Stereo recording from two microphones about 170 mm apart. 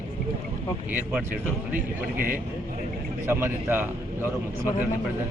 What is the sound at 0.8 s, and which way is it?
Speech, 10° right (ahead or behind).